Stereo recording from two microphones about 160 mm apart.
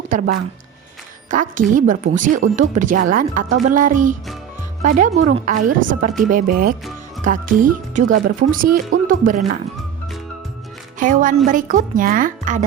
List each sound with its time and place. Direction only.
1.3 s a woman's voice: 55° right (ahead or behind)
11.0 s a woman's voice: 55° right (ahead or behind)